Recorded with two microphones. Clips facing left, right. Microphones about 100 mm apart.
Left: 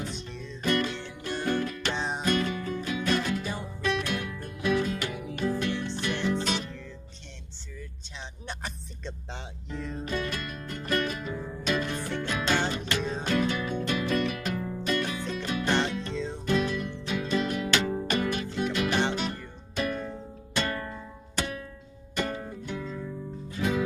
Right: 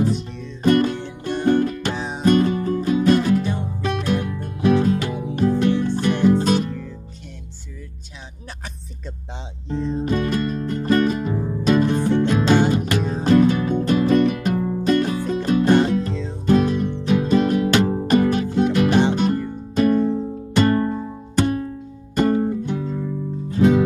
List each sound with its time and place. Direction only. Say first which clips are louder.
0.7 s music: right 11 dB; 45° right (ahead or behind)
2.0 s music: right 3 dB; centre (ahead or behind)
2.2 s music: right 13 dB; 35° right (ahead or behind)
5.9 s music: right 12 dB; 50° right (ahead or behind)
9.7 s music: right 12 dB; 30° right (ahead or behind)
10.1 s music: right 9 dB; 40° right (ahead or behind)
11.7 s music: right 12 dB; 45° right (ahead or behind)
12.0 s music: right 14 dB; 20° right (ahead or behind)
12.3 s music: right 8 dB; 35° right (ahead or behind)